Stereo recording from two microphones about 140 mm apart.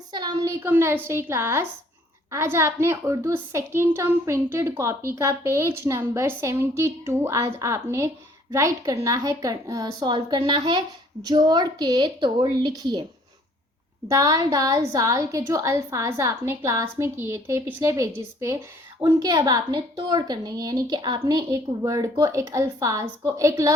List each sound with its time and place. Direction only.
0.1 s a sound: 30° right (ahead or behind)
0.6 s a woman's voice: 15° right (ahead or behind)
14.1 s a woman's voice: 25° right (ahead or behind)